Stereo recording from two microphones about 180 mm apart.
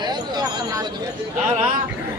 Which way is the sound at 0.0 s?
25° right (ahead or behind).